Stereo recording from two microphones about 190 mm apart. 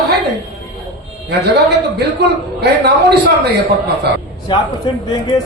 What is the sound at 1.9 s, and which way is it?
Speech, 60° right (ahead or behind).